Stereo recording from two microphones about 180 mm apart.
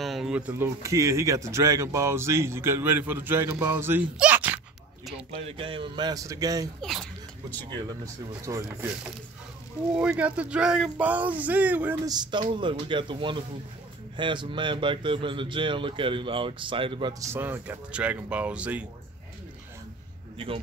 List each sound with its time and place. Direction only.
0.0 s speech: centre (ahead or behind)
5.3 s speech: 30° right (ahead or behind)
6.8 s speech: centre (ahead or behind)
8.0 s speech: 20° right (ahead or behind)
9.9 s speech: 5° right (ahead or behind)
12.1 s speech: 25° right (ahead or behind)
17.2 s speech: 15° right (ahead or behind)